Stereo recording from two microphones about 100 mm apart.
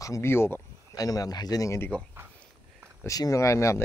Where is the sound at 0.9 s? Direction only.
35° left (ahead or behind).